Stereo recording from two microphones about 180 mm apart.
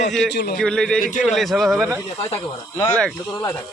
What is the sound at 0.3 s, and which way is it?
Speech, 60° left (ahead or behind).